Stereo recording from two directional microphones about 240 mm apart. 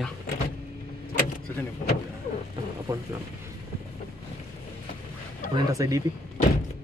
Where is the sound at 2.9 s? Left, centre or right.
Centre.